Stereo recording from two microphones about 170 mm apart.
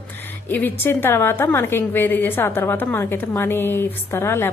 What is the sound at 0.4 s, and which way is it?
A woman's voice, 10° left (ahead or behind).